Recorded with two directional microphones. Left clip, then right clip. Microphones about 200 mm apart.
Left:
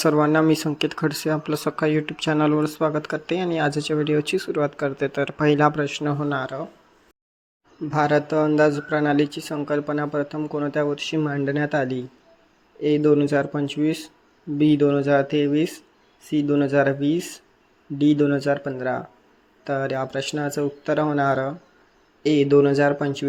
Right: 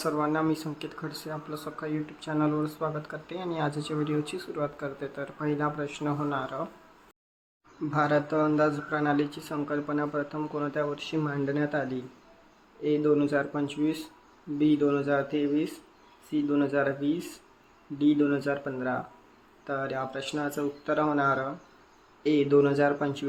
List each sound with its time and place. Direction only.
0.0 s speech: 35° left (ahead or behind)
7.9 s speech: 30° left (ahead or behind)